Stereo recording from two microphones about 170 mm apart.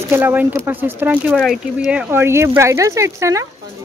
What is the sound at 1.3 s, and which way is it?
Speech, centre (ahead or behind).